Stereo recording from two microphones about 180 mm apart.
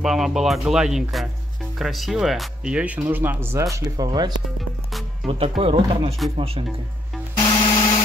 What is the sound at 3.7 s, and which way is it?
Speech, 20° right (ahead or behind).